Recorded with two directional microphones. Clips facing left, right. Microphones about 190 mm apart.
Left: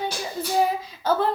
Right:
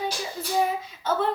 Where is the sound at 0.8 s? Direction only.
35° left (ahead or behind).